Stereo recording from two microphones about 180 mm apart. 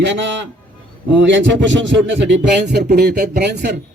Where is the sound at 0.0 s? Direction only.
80° right.